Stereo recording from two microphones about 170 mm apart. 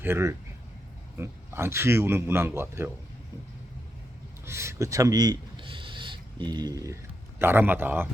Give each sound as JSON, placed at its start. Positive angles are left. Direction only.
{"t": 0.0, "sound": "a man's voice", "side_deg": -15}
{"t": 4.4, "sound": "speech", "side_deg": -15}